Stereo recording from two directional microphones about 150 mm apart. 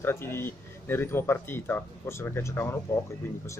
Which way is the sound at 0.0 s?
15° left (ahead or behind).